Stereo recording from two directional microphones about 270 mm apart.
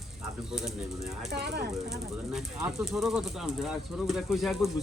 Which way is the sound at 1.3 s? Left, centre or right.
Right.